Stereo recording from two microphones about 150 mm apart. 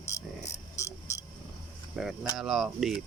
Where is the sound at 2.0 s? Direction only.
Centre (ahead or behind).